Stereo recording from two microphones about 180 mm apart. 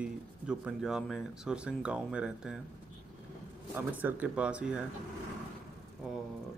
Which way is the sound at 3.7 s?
10° right (ahead or behind).